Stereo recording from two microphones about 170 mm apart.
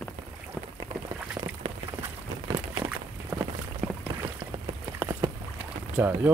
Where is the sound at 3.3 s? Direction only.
10° right (ahead or behind).